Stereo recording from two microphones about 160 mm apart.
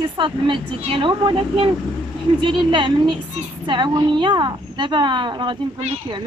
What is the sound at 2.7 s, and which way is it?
A woman's voice, 30° right (ahead or behind).